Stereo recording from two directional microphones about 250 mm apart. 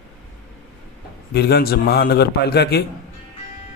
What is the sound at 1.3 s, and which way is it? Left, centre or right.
A man's voice, left.